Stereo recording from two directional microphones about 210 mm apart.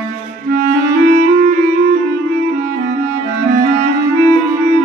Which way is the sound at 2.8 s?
40° right (ahead or behind).